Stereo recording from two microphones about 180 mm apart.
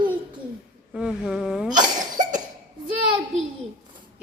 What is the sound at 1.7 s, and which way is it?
Cough, 25° right (ahead or behind).